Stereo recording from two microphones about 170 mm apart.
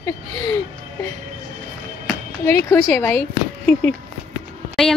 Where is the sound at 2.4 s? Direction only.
15° left (ahead or behind).